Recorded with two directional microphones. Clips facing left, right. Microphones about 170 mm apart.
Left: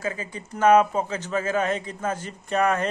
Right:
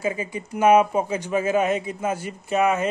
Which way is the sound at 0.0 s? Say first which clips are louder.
Right 4 dB; 15° right (ahead or behind).